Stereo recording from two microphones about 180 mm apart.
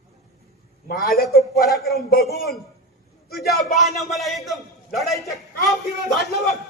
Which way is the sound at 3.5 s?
Centre (ahead or behind).